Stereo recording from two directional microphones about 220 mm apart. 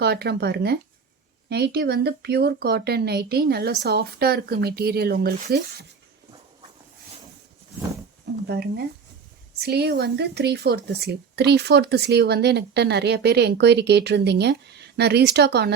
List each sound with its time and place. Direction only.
0.0 s speech: 45° right (ahead or behind)
8.4 s speech: 45° right (ahead or behind)